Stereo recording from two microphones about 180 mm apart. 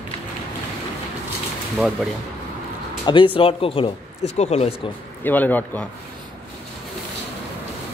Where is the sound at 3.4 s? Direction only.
30° left (ahead or behind).